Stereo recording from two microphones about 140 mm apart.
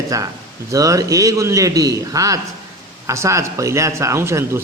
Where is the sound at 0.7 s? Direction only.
25° right (ahead or behind).